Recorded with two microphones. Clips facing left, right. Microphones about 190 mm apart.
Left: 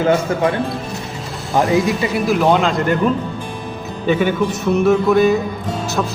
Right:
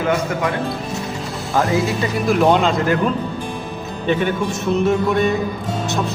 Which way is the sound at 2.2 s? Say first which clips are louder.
Right 1 dB; centre (ahead or behind).